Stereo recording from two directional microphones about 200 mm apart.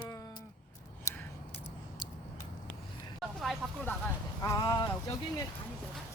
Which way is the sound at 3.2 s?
Centre (ahead or behind).